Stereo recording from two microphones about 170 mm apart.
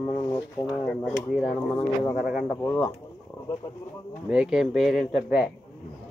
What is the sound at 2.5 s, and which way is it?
Speech, 10° left (ahead or behind).